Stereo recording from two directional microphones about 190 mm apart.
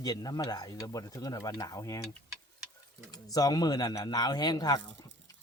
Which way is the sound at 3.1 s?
20° left (ahead or behind).